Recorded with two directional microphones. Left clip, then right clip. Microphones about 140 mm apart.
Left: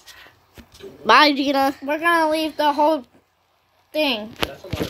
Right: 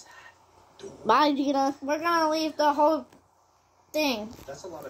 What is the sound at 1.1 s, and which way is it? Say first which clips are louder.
Speech: left 8 dB; 30° left (ahead or behind).